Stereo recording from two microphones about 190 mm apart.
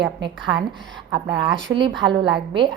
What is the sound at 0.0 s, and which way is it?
A woman's voice, 25° right (ahead or behind).